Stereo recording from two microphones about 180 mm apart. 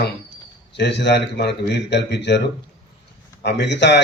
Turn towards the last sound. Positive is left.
turn(degrees=75)  # may be behind; listen again after turning